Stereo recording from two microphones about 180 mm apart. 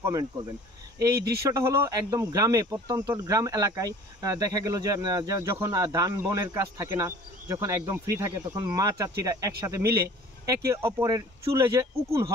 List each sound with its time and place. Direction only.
0.0 s speech: 20° right (ahead or behind)